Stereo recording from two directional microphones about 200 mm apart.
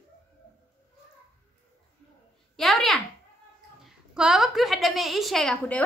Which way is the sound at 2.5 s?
Centre (ahead or behind).